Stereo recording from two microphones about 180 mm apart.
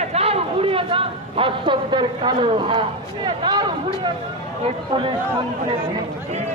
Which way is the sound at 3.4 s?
25° right (ahead or behind).